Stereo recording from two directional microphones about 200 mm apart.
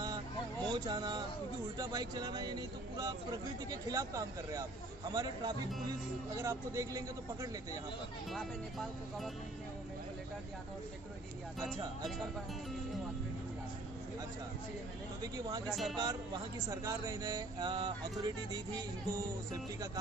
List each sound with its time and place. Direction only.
0.7 s a man's voice: 20° right (ahead or behind)
8.3 s speech: centre (ahead or behind)
15.3 s a man's voice: 20° right (ahead or behind)
15.7 s speech: centre (ahead or behind)
16.0 s speech: 15° right (ahead or behind)